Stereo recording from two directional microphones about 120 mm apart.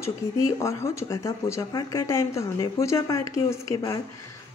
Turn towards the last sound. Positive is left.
turn(degrees=25)  # may be behind; listen again after turning